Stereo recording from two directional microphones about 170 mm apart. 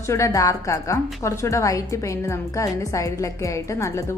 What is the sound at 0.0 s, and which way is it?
A woman's voice, 15° left (ahead or behind).